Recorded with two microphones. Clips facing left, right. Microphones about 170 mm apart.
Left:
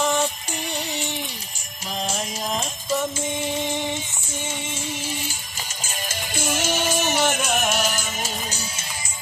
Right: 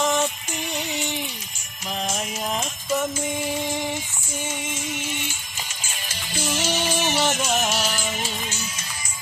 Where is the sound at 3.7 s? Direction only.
5° right (ahead or behind).